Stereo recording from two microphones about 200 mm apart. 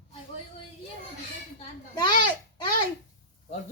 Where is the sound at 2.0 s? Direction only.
20° left (ahead or behind).